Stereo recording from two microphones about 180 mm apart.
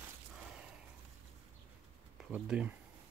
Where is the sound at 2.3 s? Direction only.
5° right (ahead or behind).